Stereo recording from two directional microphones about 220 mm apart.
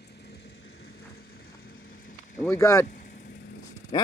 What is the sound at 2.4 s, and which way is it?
Speech, 10° left (ahead or behind).